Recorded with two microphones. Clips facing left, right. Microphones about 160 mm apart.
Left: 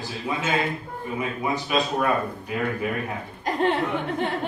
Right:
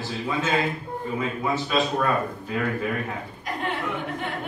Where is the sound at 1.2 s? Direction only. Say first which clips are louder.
Even; 15° left (ahead or behind).